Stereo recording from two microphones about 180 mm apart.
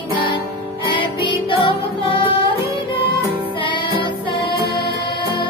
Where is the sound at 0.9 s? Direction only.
25° left (ahead or behind).